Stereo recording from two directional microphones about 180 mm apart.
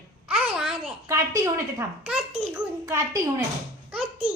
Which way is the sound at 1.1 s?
15° right (ahead or behind).